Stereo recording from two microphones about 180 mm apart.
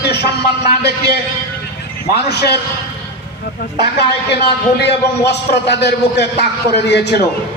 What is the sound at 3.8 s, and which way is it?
A man's voice, 65° left (ahead or behind).